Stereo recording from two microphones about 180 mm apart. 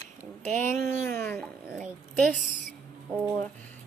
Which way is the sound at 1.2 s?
10° left (ahead or behind).